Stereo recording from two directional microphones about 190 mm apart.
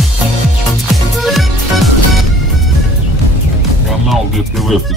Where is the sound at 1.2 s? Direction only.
Centre (ahead or behind).